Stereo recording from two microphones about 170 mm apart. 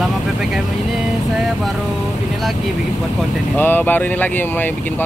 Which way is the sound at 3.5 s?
10° left (ahead or behind).